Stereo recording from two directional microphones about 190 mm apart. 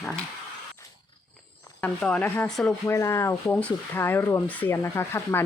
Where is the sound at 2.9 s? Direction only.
15° left (ahead or behind).